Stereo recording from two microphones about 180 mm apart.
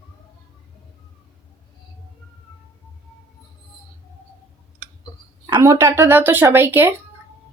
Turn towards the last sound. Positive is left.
turn(degrees=-10)  # may be behind; listen again after turning